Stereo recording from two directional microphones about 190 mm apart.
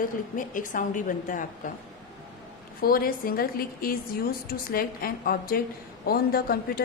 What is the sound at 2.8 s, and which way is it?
A woman's voice, 50° left (ahead or behind).